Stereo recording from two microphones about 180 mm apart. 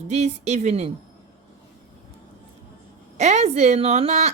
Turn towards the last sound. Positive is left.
turn(degrees=-40)  # may be behind; listen again after turning